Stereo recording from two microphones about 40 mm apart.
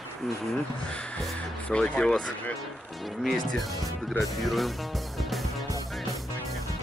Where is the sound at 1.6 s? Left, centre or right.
Left.